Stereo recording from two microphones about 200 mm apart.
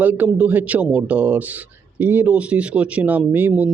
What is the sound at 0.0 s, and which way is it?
A man's voice, 10° right (ahead or behind).